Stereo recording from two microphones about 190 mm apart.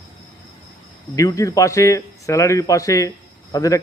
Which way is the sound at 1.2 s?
15° left (ahead or behind).